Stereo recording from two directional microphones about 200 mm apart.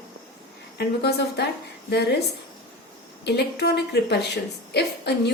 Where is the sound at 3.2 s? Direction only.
55° left (ahead or behind).